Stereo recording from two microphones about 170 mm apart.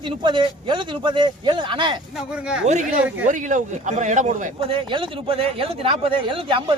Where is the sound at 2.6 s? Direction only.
45° right (ahead or behind).